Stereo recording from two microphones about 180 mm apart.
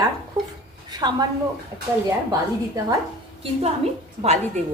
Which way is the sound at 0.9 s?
20° right (ahead or behind).